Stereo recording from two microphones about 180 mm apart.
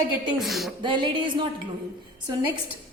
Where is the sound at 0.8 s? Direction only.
25° right (ahead or behind).